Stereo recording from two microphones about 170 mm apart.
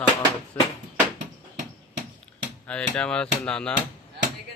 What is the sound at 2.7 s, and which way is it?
Speech, 5° left (ahead or behind).